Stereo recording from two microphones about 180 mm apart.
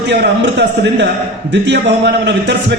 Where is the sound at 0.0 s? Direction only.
70° right (ahead or behind).